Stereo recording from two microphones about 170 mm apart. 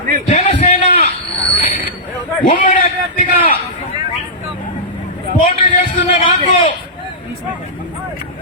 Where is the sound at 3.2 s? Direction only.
55° left (ahead or behind).